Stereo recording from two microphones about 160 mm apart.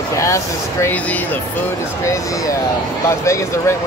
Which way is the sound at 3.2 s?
20° left (ahead or behind).